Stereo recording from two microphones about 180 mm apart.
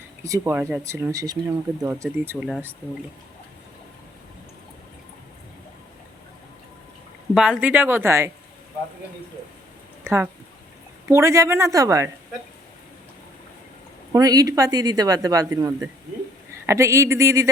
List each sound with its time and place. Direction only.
0.2 s speech: 15° right (ahead or behind)
7.3 s speech: 5° right (ahead or behind)
10.0 s speech: 10° right (ahead or behind)
14.1 s speech: 20° right (ahead or behind)